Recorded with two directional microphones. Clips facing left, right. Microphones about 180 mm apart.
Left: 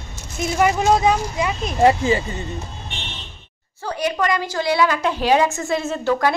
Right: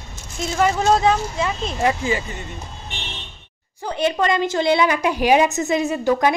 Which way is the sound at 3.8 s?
25° right (ahead or behind).